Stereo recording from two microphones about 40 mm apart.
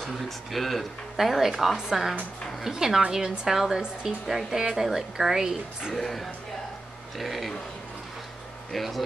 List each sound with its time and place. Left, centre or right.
0.5 s a woman's voice: centre
5.9 s speech: centre
8.7 s speech: centre